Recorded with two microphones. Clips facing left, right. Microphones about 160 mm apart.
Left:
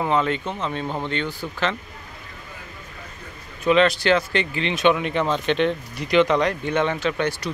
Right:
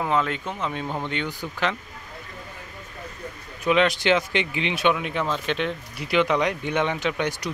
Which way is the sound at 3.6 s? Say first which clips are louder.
Left 3 dB; 15° right (ahead or behind).